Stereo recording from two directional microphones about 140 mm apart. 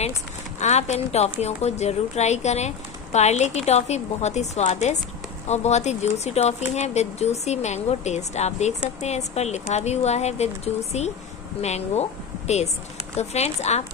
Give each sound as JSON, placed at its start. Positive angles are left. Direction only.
{"t": 0.6, "sound": "a woman's voice", "side_deg": 55}